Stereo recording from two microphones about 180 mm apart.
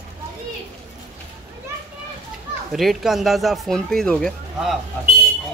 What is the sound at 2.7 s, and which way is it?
A man's voice, centre (ahead or behind).